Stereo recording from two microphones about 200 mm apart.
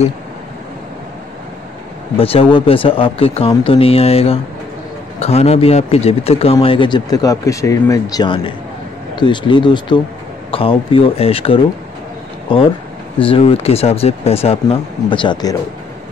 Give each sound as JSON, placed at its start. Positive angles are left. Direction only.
{"t": 2.1, "sound": "a man's voice", "side_deg": 30}